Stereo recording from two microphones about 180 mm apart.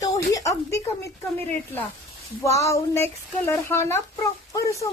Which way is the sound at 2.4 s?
15° left (ahead or behind).